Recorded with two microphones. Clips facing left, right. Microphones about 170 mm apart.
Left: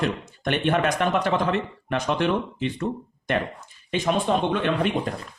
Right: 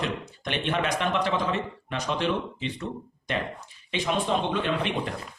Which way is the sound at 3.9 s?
50° left (ahead or behind).